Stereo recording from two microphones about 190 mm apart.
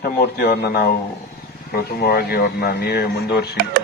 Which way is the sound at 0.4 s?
55° left (ahead or behind).